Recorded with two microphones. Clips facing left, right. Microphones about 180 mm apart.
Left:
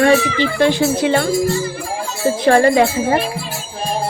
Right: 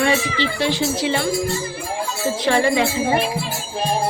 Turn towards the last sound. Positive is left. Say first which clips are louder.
# left 4 dB
turn(degrees=50)  # may be behind; listen again after turning